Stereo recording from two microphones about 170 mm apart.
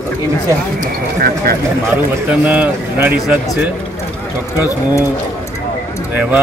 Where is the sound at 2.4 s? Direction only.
10° right (ahead or behind).